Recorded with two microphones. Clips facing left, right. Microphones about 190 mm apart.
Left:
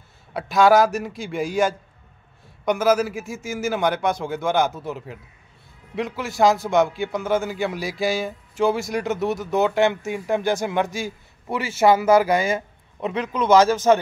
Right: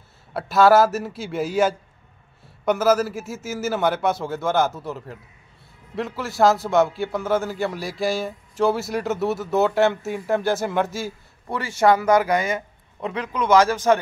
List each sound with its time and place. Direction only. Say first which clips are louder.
0.3 s a man's voice: right 1 dB; 5° right (ahead or behind)
11.8 s speech: left 1 dB; 15° left (ahead or behind)
12.2 s speech: left 2 dB; 25° left (ahead or behind)